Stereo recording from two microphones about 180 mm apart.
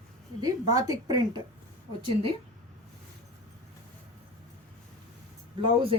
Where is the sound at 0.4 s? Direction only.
20° right (ahead or behind).